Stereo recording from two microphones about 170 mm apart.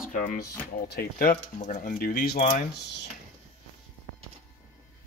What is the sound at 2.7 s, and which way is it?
Speech, 80° left.